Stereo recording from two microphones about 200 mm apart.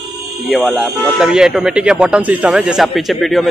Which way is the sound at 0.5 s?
Centre (ahead or behind).